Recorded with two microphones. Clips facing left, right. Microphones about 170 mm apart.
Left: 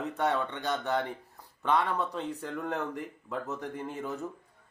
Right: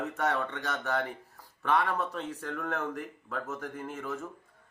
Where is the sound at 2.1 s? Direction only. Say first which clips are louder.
Left 1 dB; 20° left (ahead or behind).